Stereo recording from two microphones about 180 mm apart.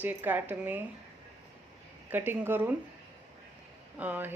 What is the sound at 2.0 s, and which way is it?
Speech, 10° right (ahead or behind).